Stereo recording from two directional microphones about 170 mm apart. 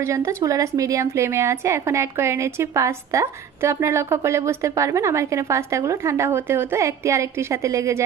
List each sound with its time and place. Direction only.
0.0 s a woman's voice: 15° right (ahead or behind)